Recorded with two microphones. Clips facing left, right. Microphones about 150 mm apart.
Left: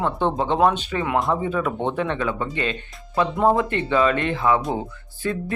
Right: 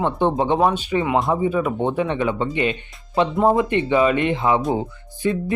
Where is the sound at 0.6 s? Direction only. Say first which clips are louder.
Right 1 dB; 5° right (ahead or behind).